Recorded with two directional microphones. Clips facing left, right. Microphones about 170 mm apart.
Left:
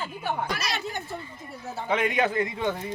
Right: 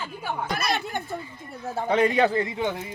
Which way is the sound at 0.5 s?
55° right (ahead or behind).